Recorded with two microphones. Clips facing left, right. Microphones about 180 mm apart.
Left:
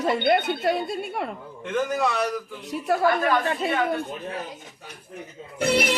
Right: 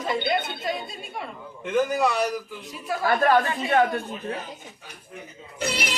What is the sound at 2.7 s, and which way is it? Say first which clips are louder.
Speech: left 6 dB; 65° left (ahead or behind).